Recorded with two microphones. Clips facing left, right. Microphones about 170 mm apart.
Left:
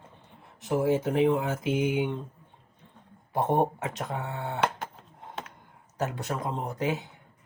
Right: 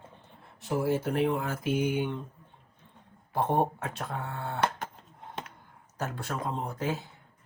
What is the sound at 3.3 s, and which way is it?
Speech, 20° left (ahead or behind).